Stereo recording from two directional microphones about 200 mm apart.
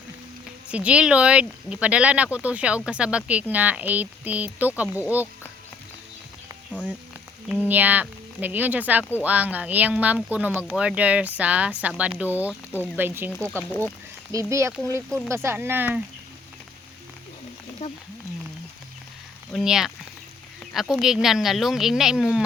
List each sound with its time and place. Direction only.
0.7 s speech: 5° right (ahead or behind)
6.7 s speech: 5° left (ahead or behind)
7.6 s speech: 10° right (ahead or behind)
14.3 s speech: 15° right (ahead or behind)
17.8 s speech: 35° left (ahead or behind)
19.5 s speech: centre (ahead or behind)